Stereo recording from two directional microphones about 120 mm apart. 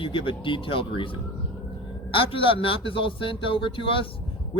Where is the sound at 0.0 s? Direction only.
45° left (ahead or behind).